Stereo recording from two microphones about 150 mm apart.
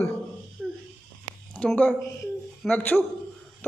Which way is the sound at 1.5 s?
10° left (ahead or behind).